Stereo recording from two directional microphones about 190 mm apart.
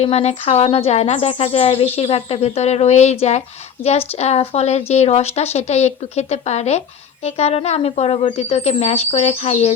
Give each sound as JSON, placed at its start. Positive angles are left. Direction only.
{"t": 0.0, "sound": "speech", "side_deg": 35}